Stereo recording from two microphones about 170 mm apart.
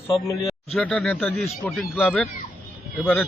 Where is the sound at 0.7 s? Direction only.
5° left (ahead or behind).